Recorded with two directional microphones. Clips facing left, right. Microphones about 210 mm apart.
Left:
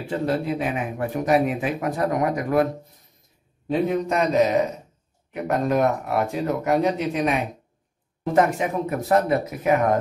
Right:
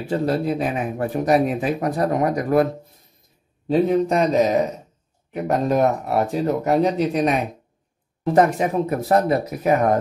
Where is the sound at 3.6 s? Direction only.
35° right (ahead or behind).